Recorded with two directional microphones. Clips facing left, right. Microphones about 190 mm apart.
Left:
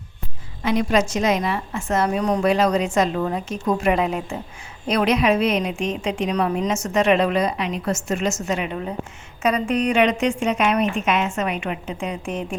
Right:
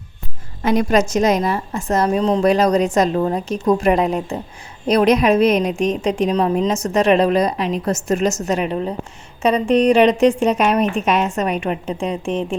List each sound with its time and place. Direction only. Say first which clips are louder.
0.6 s a woman's voice: right 4 dB; 45° right (ahead or behind); by 2.4 s 30° right (ahead or behind)
2.4 s a woman's voice: right 4 dB; 40° right (ahead or behind)